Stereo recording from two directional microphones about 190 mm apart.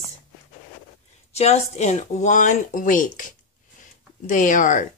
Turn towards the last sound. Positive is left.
turn(degrees=45)  # may be behind; listen again after turning